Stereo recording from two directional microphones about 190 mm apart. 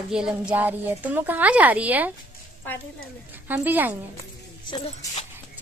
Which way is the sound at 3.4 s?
10° right (ahead or behind).